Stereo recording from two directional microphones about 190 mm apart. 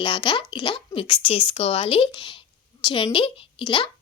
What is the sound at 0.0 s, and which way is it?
Speech, 25° left (ahead or behind).